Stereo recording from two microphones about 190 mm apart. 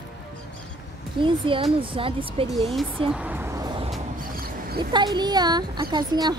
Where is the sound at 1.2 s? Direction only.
25° right (ahead or behind).